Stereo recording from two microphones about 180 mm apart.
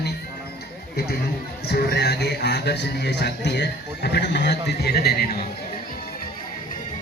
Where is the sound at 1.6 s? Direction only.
65° left (ahead or behind).